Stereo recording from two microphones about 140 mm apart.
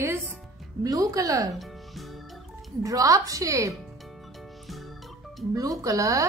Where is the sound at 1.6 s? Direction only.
Centre (ahead or behind).